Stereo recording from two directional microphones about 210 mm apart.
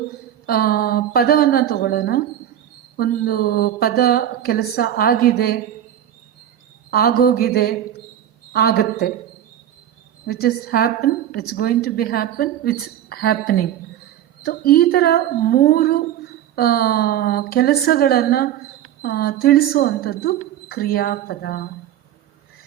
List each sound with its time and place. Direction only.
0.4 s a woman's voice: 45° left (ahead or behind)
6.9 s a woman's voice: 45° left (ahead or behind)
10.2 s a woman's voice: 45° left (ahead or behind)